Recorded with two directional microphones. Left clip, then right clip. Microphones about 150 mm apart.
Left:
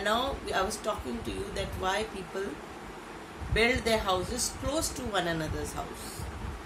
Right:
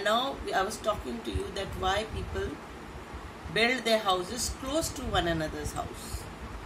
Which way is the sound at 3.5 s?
5° right (ahead or behind).